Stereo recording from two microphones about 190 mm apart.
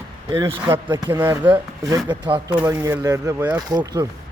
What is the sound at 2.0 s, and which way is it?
Speech, 25° right (ahead or behind).